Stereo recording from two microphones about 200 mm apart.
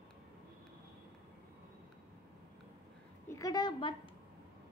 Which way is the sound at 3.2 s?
15° left (ahead or behind).